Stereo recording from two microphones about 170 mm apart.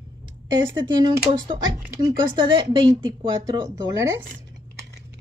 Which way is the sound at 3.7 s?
20° right (ahead or behind).